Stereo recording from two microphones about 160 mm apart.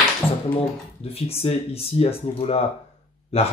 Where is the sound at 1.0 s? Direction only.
40° left (ahead or behind).